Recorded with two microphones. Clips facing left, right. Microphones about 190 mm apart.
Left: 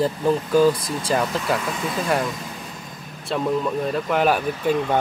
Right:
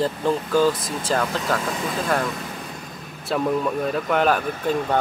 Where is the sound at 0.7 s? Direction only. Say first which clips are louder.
Left 1 dB; 25° right (ahead or behind).